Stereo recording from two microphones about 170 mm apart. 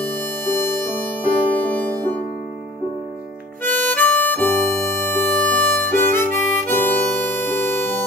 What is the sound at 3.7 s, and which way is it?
Harmonica, 10° left (ahead or behind).